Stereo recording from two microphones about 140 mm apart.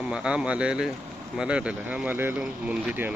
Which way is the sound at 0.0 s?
5° right (ahead or behind).